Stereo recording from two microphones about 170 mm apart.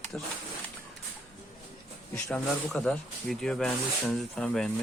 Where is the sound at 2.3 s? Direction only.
5° left (ahead or behind).